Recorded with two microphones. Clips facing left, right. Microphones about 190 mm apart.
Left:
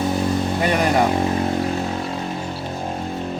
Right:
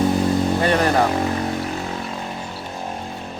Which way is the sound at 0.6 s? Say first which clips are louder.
Left 1 dB; 15° left (ahead or behind).